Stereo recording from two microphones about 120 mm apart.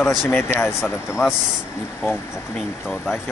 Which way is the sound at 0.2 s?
20° left (ahead or behind).